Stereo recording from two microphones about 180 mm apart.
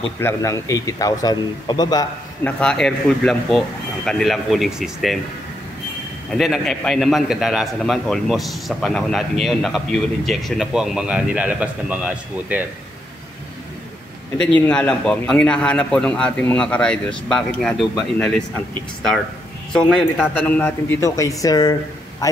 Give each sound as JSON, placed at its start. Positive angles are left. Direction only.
{"t": 0.2, "sound": "a man's voice", "side_deg": 15}
{"t": 2.4, "sound": "speech", "side_deg": 5}
{"t": 6.3, "sound": "speech", "side_deg": 0}
{"t": 14.4, "sound": "speech", "side_deg": 5}
{"t": 19.7, "sound": "a man's voice", "side_deg": 5}